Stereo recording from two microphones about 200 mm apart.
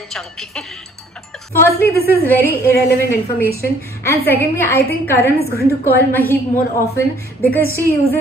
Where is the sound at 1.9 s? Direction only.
50° left (ahead or behind).